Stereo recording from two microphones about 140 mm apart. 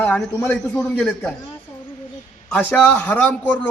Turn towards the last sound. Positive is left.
turn(degrees=10)  # may be behind; listen again after turning